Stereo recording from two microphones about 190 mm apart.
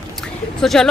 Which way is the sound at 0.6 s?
5° left (ahead or behind).